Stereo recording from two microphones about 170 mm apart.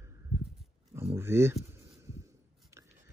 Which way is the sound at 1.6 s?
15° right (ahead or behind).